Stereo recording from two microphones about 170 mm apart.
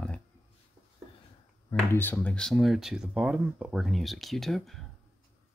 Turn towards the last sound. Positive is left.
turn(degrees=0)  # may be behind; listen again after turning